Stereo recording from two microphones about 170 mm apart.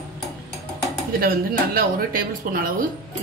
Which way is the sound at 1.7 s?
60° right (ahead or behind).